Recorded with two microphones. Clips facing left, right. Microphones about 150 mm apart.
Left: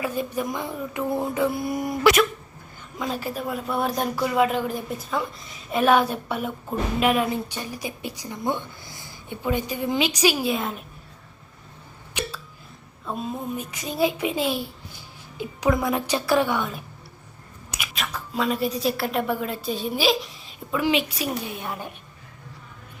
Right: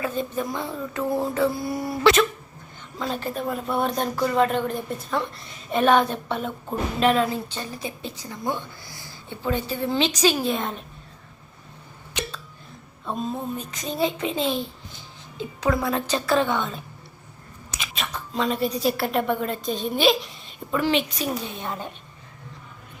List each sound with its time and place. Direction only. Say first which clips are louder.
0.0 s speech: even; 10° left (ahead or behind)
3.1 s speech: right 1 dB; 5° left (ahead or behind)
13.1 s a woman's voice: right 1 dB; 10° left (ahead or behind)